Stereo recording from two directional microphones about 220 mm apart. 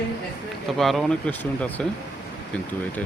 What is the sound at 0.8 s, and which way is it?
Speech, centre (ahead or behind).